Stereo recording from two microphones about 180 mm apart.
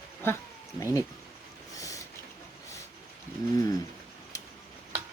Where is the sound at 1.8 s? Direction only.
20° left (ahead or behind).